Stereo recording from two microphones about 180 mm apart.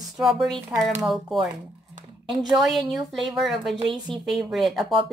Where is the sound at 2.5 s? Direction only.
Centre (ahead or behind).